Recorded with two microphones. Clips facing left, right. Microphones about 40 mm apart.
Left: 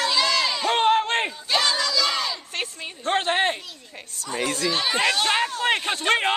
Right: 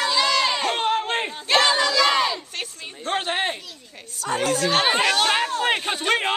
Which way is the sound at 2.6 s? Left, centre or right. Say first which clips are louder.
Left 2 dB; centre.